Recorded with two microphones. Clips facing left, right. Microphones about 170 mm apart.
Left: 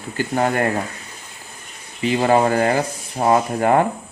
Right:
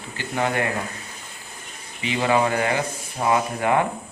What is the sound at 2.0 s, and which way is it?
Speech, 40° left (ahead or behind).